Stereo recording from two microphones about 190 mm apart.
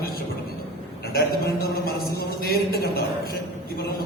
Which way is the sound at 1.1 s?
55° left (ahead or behind).